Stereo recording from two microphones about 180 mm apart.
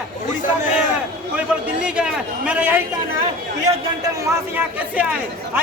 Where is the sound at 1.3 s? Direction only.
5° right (ahead or behind).